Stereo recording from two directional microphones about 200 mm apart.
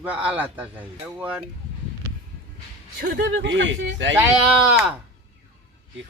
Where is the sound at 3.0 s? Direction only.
65° right (ahead or behind).